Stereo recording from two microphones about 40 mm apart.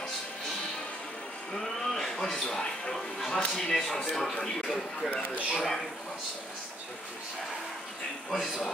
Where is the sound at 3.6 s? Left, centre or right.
Centre.